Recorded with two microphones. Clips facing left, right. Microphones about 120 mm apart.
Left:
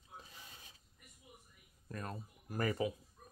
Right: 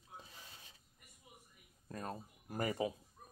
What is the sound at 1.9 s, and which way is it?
Speech, 30° right (ahead or behind).